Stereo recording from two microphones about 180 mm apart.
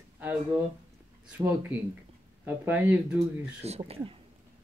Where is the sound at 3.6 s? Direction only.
35° right (ahead or behind).